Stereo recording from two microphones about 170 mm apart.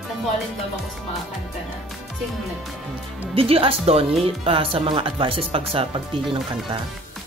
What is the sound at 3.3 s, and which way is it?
Speech, 35° right (ahead or behind).